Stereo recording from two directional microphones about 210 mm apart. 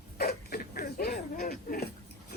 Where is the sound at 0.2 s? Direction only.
45° left (ahead or behind).